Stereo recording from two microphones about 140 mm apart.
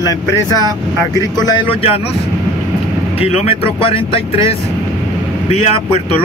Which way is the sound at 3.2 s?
50° left (ahead or behind).